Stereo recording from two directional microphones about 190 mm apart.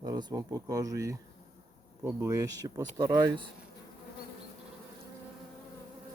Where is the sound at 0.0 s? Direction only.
20° right (ahead or behind).